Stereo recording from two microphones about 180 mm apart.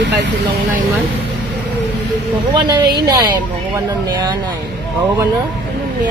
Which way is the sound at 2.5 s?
25° right (ahead or behind).